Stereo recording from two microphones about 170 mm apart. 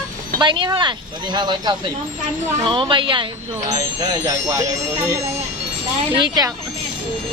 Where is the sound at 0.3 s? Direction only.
30° right (ahead or behind).